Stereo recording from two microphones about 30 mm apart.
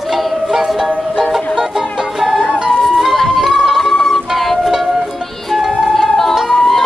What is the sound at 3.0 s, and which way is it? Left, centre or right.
Music, centre.